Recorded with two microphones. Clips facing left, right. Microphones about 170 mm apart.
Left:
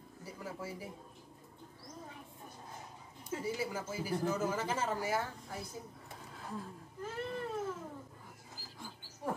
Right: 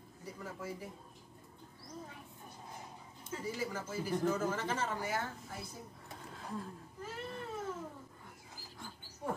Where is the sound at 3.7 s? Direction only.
10° left (ahead or behind).